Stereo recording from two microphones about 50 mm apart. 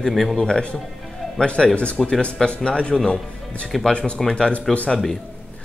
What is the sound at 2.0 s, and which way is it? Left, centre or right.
Speech, centre.